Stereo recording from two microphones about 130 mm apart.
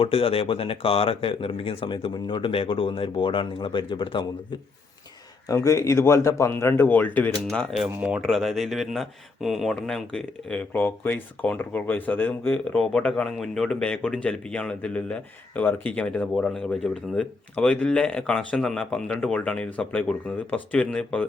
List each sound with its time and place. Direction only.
0.0 s speech: 45° left (ahead or behind)
5.5 s speech: 25° left (ahead or behind); by 7.8 s 10° left (ahead or behind)
7.9 s speech: 10° right (ahead or behind); by 21.2 s 5° left (ahead or behind)